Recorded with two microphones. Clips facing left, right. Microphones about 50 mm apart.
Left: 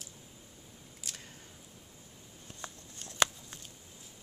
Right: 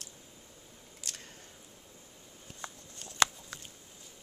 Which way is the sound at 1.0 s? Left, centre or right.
Centre.